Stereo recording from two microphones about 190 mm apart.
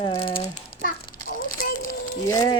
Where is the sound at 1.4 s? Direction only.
45° left (ahead or behind).